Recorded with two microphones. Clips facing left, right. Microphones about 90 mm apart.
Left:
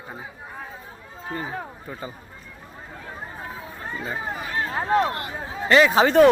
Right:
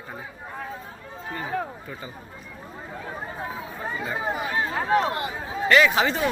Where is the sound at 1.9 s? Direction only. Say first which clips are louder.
Left 3 dB; 30° left (ahead or behind).